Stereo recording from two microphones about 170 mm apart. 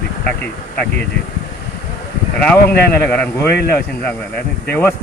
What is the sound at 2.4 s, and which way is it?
Speech, 10° left (ahead or behind).